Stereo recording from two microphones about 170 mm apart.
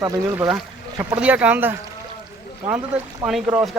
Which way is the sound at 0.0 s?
20° right (ahead or behind).